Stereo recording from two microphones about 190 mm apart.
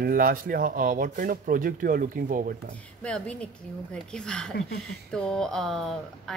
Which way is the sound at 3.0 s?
5° left (ahead or behind).